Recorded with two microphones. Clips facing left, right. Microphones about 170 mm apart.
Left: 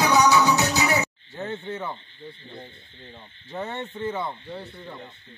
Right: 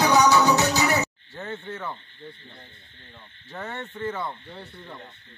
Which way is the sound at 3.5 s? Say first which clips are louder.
Left 3 dB; 20° left (ahead or behind).